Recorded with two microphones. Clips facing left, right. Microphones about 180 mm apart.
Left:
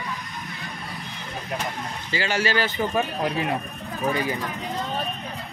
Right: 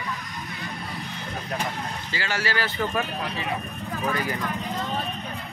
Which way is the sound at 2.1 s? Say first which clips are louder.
Left 5 dB; 20° left (ahead or behind).